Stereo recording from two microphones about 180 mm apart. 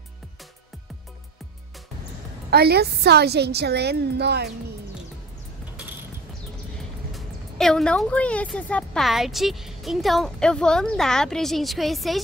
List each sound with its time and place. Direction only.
2.5 s a woman's voice: 60° right (ahead or behind)
7.1 s speech: centre (ahead or behind)